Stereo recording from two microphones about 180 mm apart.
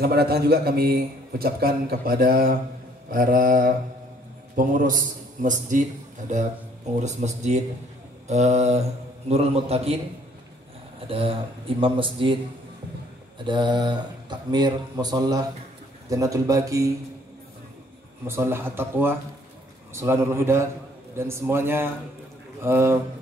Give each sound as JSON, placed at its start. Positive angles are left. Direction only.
{"t": 0.0, "sound": "a man's voice", "side_deg": -60}
{"t": 7.0, "sound": "speech", "side_deg": -40}
{"t": 11.1, "sound": "speech", "side_deg": -30}
{"t": 13.4, "sound": "speech", "side_deg": -25}
{"t": 18.2, "sound": "speech", "side_deg": -15}